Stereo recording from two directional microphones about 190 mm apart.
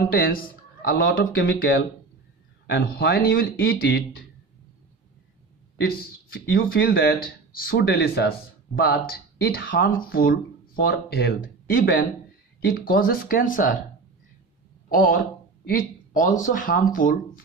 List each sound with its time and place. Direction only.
0.1 s speech: 50° left (ahead or behind)
6.3 s speech: 50° left (ahead or behind)
14.9 s speech: 50° left (ahead or behind)